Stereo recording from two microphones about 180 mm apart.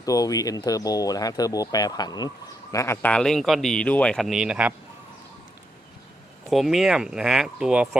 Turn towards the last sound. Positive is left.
turn(degrees=-5)  # may be behind; listen again after turning